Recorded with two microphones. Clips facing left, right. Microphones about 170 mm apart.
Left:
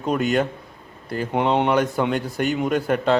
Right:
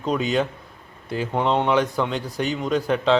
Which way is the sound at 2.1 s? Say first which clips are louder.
Left 3 dB; 50° left (ahead or behind).